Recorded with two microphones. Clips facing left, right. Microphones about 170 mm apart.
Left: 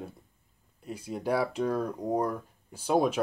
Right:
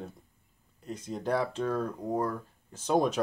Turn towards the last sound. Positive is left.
turn(degrees=5)  # may be behind; listen again after turning